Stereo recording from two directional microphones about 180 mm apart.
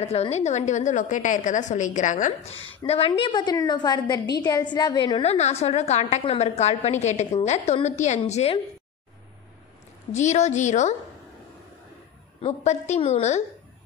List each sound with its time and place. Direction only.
0.0 s a woman's voice: 35° left (ahead or behind)
2.5 s a woman's voice: 90° left
2.9 s a woman's voice: 30° left (ahead or behind)
10.1 s a woman's voice: 40° left (ahead or behind)
12.4 s a woman's voice: 40° left (ahead or behind)